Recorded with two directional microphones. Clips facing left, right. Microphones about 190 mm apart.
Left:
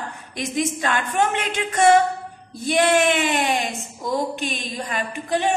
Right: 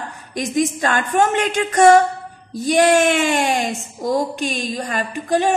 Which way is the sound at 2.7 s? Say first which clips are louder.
Right 4 dB; 45° right (ahead or behind).